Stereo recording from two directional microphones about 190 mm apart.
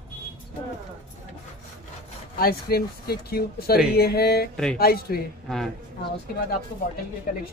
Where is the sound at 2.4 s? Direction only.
55° left (ahead or behind).